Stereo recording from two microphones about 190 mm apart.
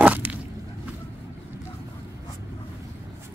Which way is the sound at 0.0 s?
5° right (ahead or behind).